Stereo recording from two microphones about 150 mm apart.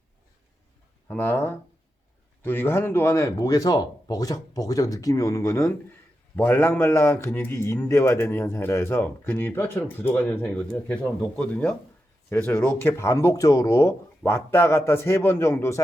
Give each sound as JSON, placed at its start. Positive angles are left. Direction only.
{"t": 1.0, "sound": "a man's voice", "side_deg": 15}